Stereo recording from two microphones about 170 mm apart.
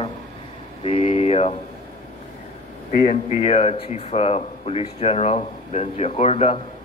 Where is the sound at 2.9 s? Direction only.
45° left (ahead or behind).